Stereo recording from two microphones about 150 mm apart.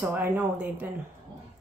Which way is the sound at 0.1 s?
10° right (ahead or behind).